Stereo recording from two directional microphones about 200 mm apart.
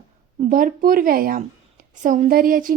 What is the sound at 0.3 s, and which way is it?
A woman's voice, 40° right (ahead or behind).